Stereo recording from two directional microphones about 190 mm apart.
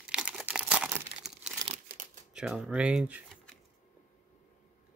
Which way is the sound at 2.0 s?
45° right (ahead or behind).